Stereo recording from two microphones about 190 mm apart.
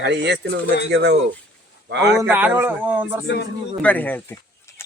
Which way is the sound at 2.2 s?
10° right (ahead or behind).